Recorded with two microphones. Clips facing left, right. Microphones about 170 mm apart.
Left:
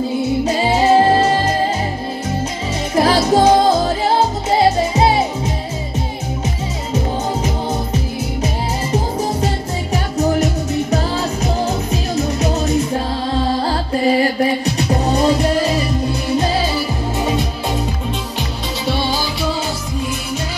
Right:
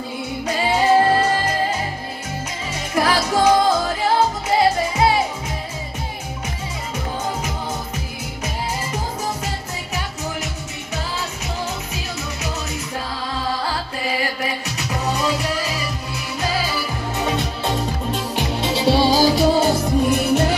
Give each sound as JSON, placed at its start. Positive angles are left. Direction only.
{"t": 0.5, "sound": "music", "side_deg": 25}
{"t": 3.0, "sound": "music", "side_deg": 30}
{"t": 10.1, "sound": "music", "side_deg": 35}
{"t": 17.2, "sound": "music", "side_deg": 15}
{"t": 18.9, "sound": "music", "side_deg": -35}